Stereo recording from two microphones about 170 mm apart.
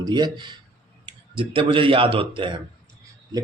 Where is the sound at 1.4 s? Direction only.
30° right (ahead or behind).